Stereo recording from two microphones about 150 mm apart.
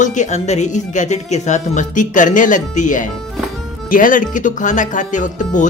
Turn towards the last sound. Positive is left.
turn(degrees=55)  # may be behind; listen again after turning